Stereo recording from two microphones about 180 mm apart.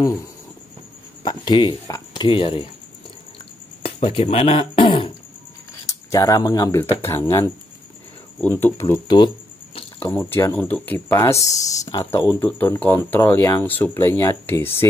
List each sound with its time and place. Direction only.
1.2 s speech: 25° left (ahead or behind)
3.8 s a sound: 35° left (ahead or behind)
5.9 s speech: 20° left (ahead or behind)